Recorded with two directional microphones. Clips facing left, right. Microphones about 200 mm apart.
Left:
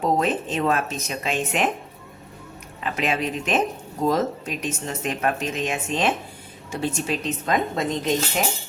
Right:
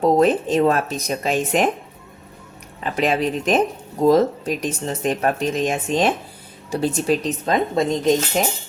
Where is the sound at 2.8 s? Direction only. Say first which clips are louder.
Right 5 dB; 35° right (ahead or behind).